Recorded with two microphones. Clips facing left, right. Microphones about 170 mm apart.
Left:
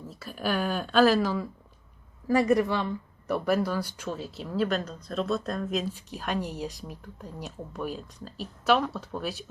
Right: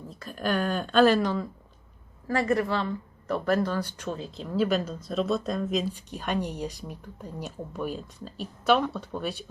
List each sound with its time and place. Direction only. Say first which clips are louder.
0.0 s speech: right 1 dB; 5° left (ahead or behind)